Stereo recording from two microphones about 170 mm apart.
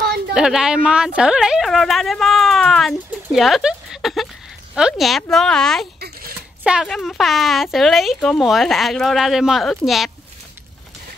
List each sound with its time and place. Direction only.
0.3 s speech: 5° right (ahead or behind)
5.9 s a sound: 65° right (ahead or behind)
6.6 s speech: 5° right (ahead or behind)